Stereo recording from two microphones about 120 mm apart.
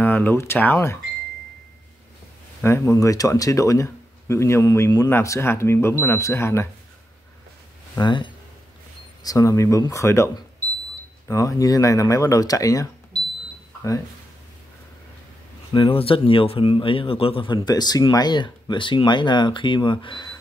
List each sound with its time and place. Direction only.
0.0 s speech: 15° left (ahead or behind)
2.6 s speech: 25° left (ahead or behind)
8.0 s speech: 40° left (ahead or behind)
9.2 s speech: 30° left (ahead or behind)
15.7 s speech: 45° left (ahead or behind)